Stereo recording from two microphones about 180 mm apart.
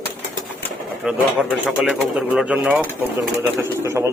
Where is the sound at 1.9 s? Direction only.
5° right (ahead or behind).